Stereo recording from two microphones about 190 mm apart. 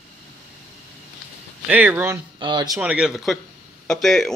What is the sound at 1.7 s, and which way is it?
Speech, 10° right (ahead or behind).